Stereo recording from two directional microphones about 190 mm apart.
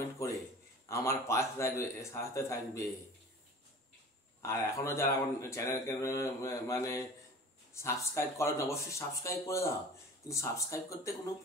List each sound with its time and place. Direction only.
0.2 s a sound: 15° left (ahead or behind)
0.8 s speech: 15° left (ahead or behind)
4.4 s speech: 15° left (ahead or behind)